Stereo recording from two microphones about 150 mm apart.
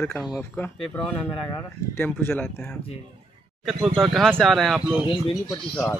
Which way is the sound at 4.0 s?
5° left (ahead or behind).